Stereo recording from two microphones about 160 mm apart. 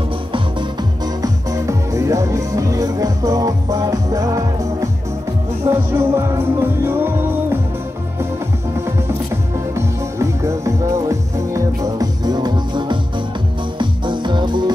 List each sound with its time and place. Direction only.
1.2 s music: 20° right (ahead or behind)
9.8 s music: 20° right (ahead or behind)